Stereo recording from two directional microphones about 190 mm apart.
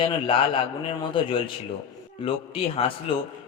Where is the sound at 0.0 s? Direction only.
25° left (ahead or behind).